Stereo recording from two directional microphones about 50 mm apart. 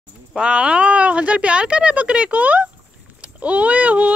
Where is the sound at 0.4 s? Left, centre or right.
Right.